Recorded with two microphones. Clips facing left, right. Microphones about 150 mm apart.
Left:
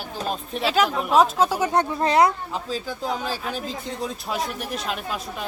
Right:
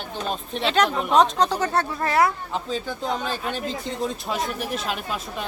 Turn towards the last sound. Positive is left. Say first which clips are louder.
# even
turn(degrees=0)  # may be behind; listen again after turning